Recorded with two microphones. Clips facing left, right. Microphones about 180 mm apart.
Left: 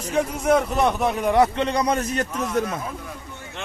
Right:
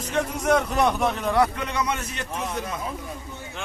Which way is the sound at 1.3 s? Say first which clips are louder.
Left 6 dB; 20° left (ahead or behind).